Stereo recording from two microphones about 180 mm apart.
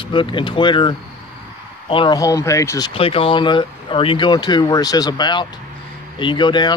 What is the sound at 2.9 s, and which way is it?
Speech, 30° left (ahead or behind).